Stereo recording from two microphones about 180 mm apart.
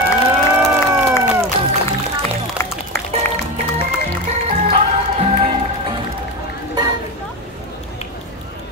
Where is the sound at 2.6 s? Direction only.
15° left (ahead or behind).